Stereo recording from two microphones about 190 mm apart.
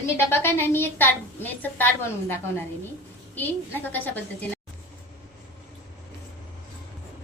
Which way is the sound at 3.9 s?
10° left (ahead or behind).